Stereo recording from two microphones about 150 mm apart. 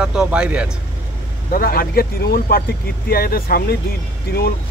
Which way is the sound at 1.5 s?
80° left.